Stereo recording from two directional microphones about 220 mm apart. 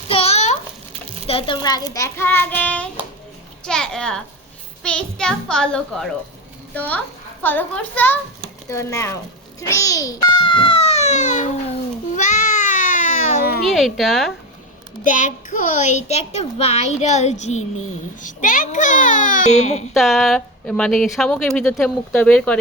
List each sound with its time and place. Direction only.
0.1 s a sound: 30° left (ahead or behind)
1.3 s a child's voice: 25° left (ahead or behind)
9.6 s babbling: 15° left (ahead or behind); by 13.6 s 40° left (ahead or behind)
13.7 s speech: centre (ahead or behind)
15.0 s a child's voice: 35° left (ahead or behind)
19.9 s speech: centre (ahead or behind)